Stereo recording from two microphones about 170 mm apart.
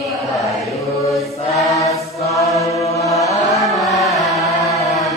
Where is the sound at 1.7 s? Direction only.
20° left (ahead or behind).